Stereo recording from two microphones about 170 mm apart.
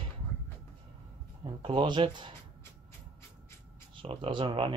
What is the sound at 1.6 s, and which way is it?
Speech, 30° right (ahead or behind).